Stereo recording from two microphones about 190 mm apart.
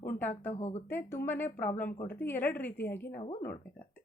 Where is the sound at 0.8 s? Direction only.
10° left (ahead or behind).